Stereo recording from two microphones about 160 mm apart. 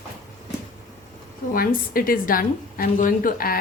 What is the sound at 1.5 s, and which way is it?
A woman's voice, 65° left (ahead or behind).